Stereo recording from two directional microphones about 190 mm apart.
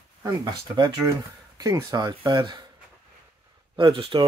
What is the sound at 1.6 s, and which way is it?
Speech, 20° right (ahead or behind).